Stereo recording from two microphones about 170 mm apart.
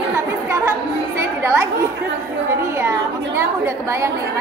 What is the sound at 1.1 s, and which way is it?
Speech, 15° right (ahead or behind).